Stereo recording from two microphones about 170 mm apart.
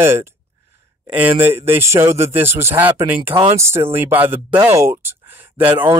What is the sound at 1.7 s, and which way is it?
Speech, 15° right (ahead or behind).